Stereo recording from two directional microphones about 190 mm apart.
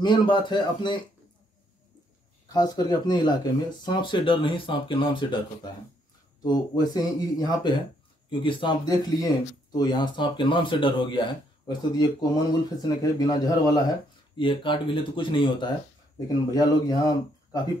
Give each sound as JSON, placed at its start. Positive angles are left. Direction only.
{"t": 0.0, "sound": "speech", "side_deg": 25}
{"t": 2.4, "sound": "speech", "side_deg": 20}